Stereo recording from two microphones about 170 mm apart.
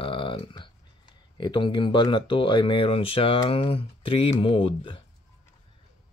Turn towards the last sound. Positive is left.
turn(degrees=30)  # may be behind; listen again after turning